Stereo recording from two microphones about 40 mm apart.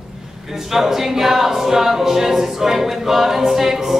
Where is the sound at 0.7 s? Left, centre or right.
Centre.